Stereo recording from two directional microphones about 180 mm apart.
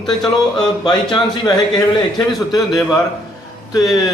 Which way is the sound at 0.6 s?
25° left (ahead or behind).